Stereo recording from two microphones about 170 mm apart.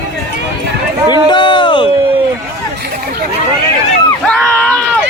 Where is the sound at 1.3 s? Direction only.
30° left (ahead or behind).